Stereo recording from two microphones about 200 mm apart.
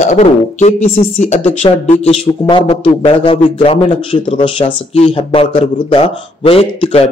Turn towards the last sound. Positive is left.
turn(degrees=30)  # may be behind; listen again after turning